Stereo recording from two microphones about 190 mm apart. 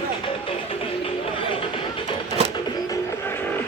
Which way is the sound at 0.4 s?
30° left (ahead or behind).